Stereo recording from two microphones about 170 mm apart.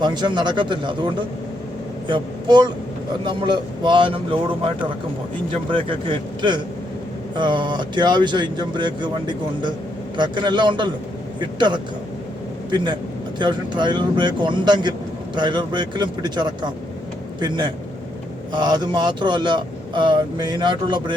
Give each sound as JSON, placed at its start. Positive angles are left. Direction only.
{"t": 0.0, "sound": "a man's voice", "side_deg": -25}
{"t": 5.7, "sound": "a man's voice", "side_deg": -30}
{"t": 18.5, "sound": "speech", "side_deg": -25}